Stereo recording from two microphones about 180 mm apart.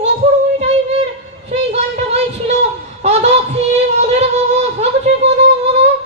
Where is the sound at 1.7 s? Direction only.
40° right (ahead or behind).